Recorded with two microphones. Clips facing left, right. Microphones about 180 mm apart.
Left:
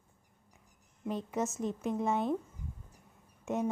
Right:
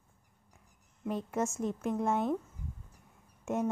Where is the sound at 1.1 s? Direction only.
Centre (ahead or behind).